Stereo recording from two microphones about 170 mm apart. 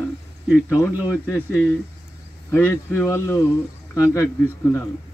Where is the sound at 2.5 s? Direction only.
15° left (ahead or behind).